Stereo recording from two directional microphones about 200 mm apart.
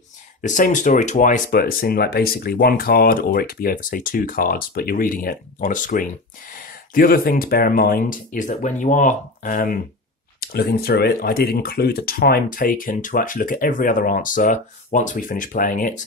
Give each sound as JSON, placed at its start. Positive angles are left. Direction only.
{"t": 0.4, "sound": "speech", "side_deg": 40}